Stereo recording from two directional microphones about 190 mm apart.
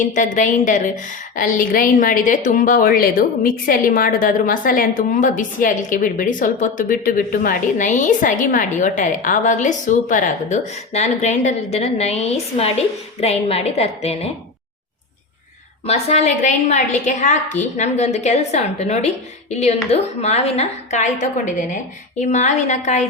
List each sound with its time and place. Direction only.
0.0 s a woman's voice: 45° left (ahead or behind)
15.9 s a woman's voice: 35° left (ahead or behind)